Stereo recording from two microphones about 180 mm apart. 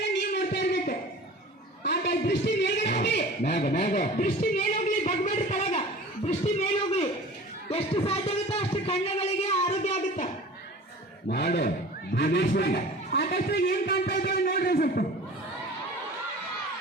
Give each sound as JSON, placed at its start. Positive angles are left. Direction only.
{"t": 0.2, "sound": "a sound", "side_deg": 70}
{"t": 2.9, "sound": "a man's voice", "side_deg": 65}
{"t": 11.3, "sound": "a man's voice", "side_deg": 60}